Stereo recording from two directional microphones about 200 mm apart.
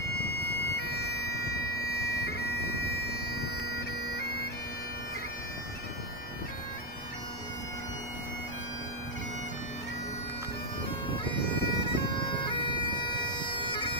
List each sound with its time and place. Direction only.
0.7 s bagpipes: 55° left (ahead or behind)
11.2 s bagpipes: 25° left (ahead or behind)